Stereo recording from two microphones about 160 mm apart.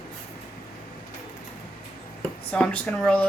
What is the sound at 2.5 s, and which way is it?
Speech, 5° left (ahead or behind).